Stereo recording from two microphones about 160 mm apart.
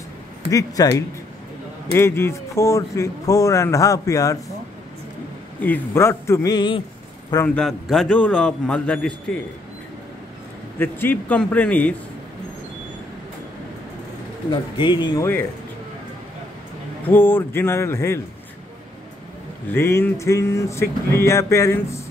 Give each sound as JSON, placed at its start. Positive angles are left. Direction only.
{"t": 0.5, "sound": "speech", "side_deg": 20}
{"t": 5.6, "sound": "speech", "side_deg": 15}
{"t": 7.4, "sound": "speech", "side_deg": 5}
{"t": 10.8, "sound": "speech", "side_deg": 10}
{"t": 14.5, "sound": "speech", "side_deg": 30}
{"t": 17.1, "sound": "speech", "side_deg": 15}
{"t": 19.7, "sound": "speech", "side_deg": 15}